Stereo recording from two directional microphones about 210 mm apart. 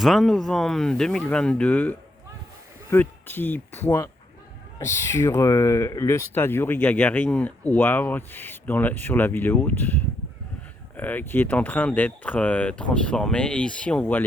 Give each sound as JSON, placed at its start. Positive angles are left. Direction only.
{"t": 0.0, "sound": "speech", "side_deg": 0}